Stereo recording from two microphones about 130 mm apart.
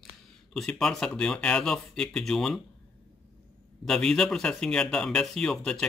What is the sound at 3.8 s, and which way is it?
Speech, 5° left (ahead or behind).